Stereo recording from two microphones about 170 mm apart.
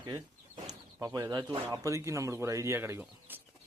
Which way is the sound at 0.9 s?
20° right (ahead or behind).